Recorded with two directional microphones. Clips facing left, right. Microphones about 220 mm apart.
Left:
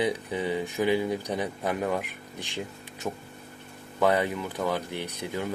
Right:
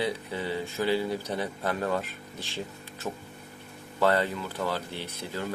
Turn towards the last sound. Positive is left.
turn(degrees=15)  # may be behind; listen again after turning